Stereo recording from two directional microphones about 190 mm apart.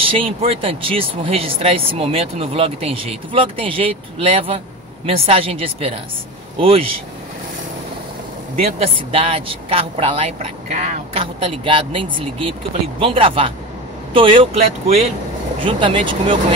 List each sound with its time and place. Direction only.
0.0 s speech: 30° right (ahead or behind)
8.7 s speech: 30° right (ahead or behind)